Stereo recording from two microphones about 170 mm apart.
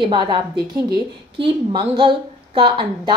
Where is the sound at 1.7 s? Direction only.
30° right (ahead or behind).